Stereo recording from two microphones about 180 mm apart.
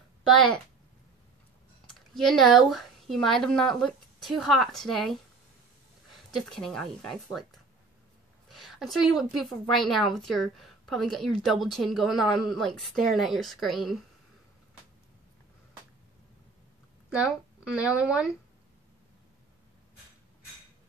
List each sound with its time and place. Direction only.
1.9 s speech: centre (ahead or behind)
6.3 s a woman's voice: 5° left (ahead or behind)
8.5 s a sound: centre (ahead or behind)
9.3 s a woman's voice: centre (ahead or behind)
17.1 s a woman's voice: 5° right (ahead or behind)